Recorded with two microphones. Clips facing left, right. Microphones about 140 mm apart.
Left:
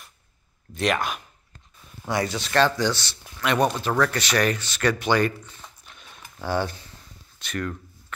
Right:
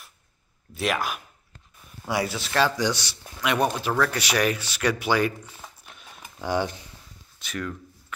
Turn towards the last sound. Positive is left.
turn(degrees=0)  # may be behind; listen again after turning